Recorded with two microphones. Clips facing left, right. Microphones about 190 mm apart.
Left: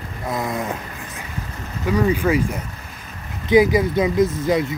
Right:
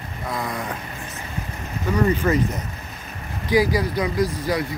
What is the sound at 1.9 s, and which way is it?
Speech, 10° left (ahead or behind).